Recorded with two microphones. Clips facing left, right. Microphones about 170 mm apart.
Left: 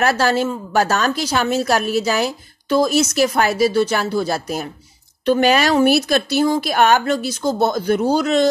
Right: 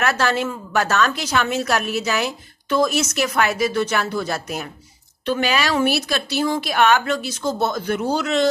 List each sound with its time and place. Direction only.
0.0 s a woman's voice: 35° left (ahead or behind)